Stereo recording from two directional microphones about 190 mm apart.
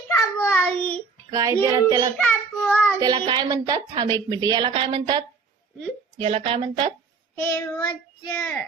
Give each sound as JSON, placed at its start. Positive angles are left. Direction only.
{"t": 0.1, "sound": "child singing", "side_deg": 10}
{"t": 1.3, "sound": "a woman's voice", "side_deg": -15}
{"t": 2.1, "sound": "child singing", "side_deg": 5}
{"t": 3.0, "sound": "a woman's voice", "side_deg": -20}
{"t": 7.3, "sound": "child singing", "side_deg": 10}